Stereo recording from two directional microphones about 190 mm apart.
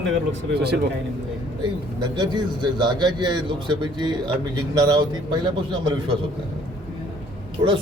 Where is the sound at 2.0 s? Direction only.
25° right (ahead or behind).